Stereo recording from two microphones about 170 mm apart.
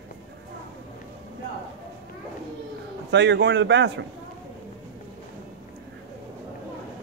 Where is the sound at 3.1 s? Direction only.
90° right.